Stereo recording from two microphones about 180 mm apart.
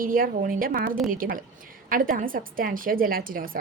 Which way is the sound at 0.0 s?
50° right (ahead or behind).